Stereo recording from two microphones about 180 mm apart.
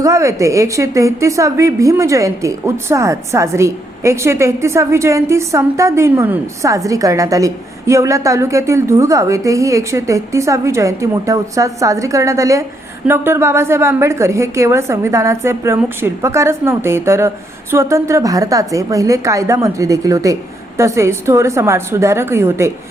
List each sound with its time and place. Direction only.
0.0 s a woman's voice: 15° right (ahead or behind)